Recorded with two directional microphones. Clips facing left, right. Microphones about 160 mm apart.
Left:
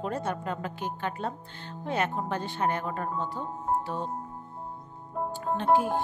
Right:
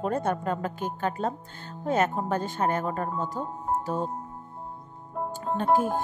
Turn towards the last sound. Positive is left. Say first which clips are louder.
# even
turn(degrees=0)  # may be behind; listen again after turning